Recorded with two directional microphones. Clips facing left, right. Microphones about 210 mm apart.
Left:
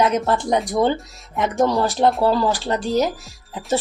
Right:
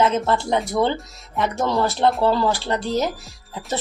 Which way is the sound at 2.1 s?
Centre (ahead or behind).